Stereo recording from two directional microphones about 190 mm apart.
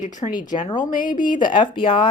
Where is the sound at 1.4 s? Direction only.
25° left (ahead or behind).